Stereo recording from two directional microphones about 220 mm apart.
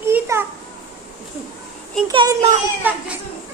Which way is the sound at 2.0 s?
15° right (ahead or behind).